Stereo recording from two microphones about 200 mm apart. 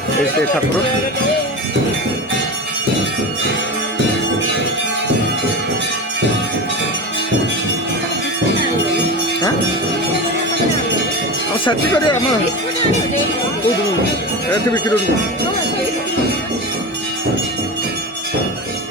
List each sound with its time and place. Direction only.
11.5 s speech: 25° left (ahead or behind)